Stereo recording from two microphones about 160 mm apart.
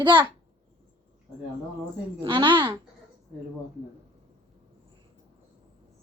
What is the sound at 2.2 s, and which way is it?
Speech, 30° right (ahead or behind).